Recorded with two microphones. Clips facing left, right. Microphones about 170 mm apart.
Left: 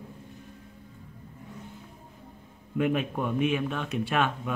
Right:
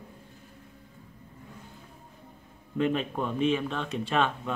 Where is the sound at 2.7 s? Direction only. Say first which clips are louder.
Left 1 dB; 10° left (ahead or behind).